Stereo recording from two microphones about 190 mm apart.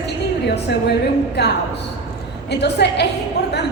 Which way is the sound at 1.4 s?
60° left (ahead or behind).